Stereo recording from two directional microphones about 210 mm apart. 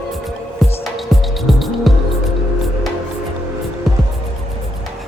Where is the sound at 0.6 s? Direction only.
Centre (ahead or behind).